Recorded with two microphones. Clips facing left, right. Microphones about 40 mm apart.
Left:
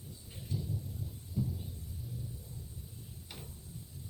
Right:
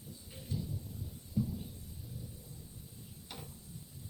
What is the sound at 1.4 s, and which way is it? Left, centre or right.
Heart sounds, centre.